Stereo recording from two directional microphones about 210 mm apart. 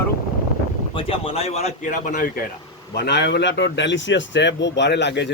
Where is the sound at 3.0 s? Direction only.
55° left (ahead or behind).